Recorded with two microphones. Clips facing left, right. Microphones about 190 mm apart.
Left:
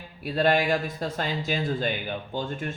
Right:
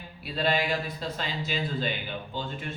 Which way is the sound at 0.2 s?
50° left (ahead or behind).